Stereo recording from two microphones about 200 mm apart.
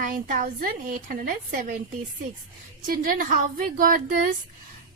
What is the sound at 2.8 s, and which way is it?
A woman's voice, 45° right (ahead or behind).